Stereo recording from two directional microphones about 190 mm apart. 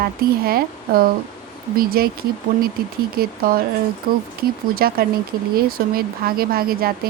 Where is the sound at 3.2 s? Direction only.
50° right (ahead or behind).